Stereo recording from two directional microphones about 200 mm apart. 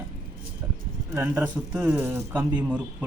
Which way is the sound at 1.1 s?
10° right (ahead or behind).